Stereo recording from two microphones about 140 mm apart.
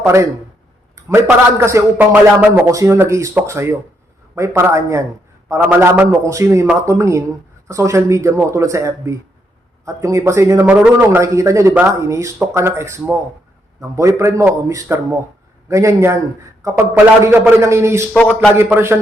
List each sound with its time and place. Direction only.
0.0 s a man's voice: 20° right (ahead or behind)
18.1 s a man's voice: 10° left (ahead or behind)
18.5 s speech: 20° right (ahead or behind)